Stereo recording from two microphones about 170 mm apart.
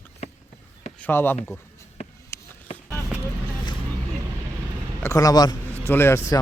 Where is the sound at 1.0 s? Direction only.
10° left (ahead or behind).